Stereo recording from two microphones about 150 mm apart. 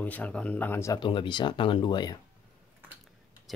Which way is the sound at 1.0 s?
30° left (ahead or behind).